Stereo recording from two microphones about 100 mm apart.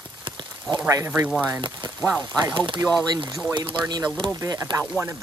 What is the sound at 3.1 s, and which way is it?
Speech, 45° right (ahead or behind).